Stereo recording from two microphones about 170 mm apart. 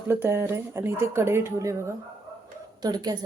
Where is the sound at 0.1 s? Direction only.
15° right (ahead or behind).